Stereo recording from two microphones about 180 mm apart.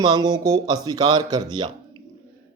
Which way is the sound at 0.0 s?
25° right (ahead or behind).